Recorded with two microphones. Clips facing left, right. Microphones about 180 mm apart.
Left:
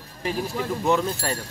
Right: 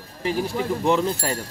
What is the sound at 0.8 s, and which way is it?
Speech, 30° right (ahead or behind).